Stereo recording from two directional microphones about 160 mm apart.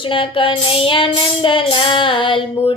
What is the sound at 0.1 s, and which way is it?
Child singing, 35° left (ahead or behind).